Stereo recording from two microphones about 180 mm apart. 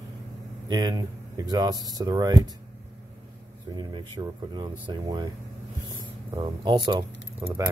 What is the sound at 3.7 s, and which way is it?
Speech, 25° right (ahead or behind).